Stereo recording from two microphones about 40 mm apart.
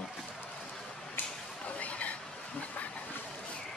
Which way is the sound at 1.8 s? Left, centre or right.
Left.